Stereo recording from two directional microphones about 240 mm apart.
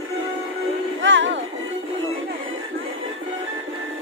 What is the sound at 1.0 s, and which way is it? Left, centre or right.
Music, right.